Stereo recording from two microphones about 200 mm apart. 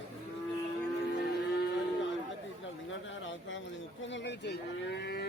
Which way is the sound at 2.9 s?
70° left (ahead or behind).